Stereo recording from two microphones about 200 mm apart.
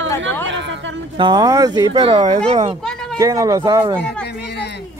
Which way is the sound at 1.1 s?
20° right (ahead or behind).